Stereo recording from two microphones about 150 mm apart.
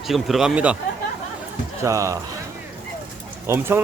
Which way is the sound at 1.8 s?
20° right (ahead or behind).